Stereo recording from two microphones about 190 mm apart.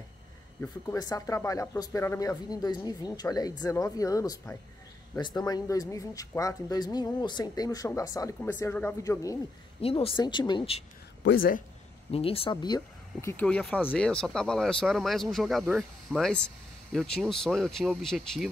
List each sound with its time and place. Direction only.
0.6 s speech: 20° left (ahead or behind)
9.8 s speech: 30° left (ahead or behind)
11.2 s speech: 70° left (ahead or behind)
12.1 s speech: 30° left (ahead or behind); by 18.5 s centre (ahead or behind)